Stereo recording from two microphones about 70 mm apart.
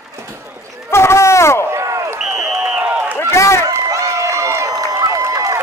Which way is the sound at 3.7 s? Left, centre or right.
Right.